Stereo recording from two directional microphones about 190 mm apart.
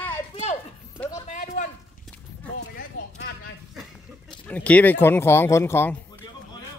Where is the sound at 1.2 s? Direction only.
40° left (ahead or behind).